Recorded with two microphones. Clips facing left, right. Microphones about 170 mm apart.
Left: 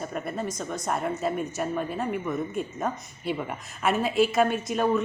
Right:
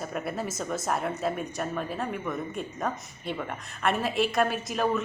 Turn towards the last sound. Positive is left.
turn(degrees=0)  # may be behind; listen again after turning